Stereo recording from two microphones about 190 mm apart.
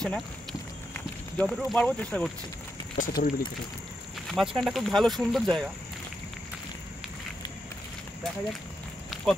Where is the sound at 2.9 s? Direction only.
45° left (ahead or behind).